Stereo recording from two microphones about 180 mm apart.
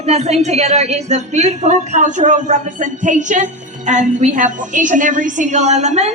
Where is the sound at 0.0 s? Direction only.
35° right (ahead or behind).